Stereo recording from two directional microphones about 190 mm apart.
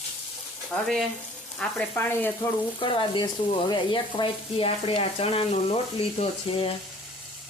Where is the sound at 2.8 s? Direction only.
25° left (ahead or behind).